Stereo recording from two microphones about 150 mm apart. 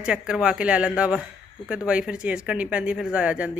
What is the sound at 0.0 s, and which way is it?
Speech, 5° right (ahead or behind).